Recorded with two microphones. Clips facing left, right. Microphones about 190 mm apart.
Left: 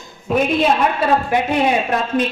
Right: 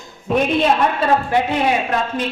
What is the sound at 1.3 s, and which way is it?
Speech, 20° left (ahead or behind).